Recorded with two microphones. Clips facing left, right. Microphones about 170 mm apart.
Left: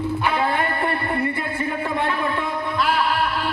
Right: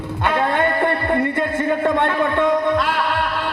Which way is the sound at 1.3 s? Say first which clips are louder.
Right 6 dB; 90° right.